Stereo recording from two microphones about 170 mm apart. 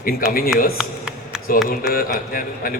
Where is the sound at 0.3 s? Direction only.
60° left (ahead or behind).